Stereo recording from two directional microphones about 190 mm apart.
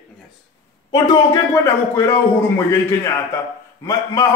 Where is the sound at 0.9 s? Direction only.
20° left (ahead or behind).